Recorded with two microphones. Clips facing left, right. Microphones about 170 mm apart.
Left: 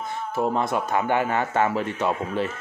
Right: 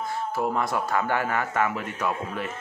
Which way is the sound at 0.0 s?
20° left (ahead or behind).